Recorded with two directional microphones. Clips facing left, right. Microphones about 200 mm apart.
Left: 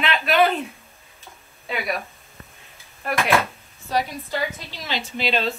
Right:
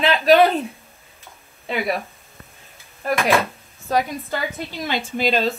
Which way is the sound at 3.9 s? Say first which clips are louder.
Right 3 dB; 50° right (ahead or behind).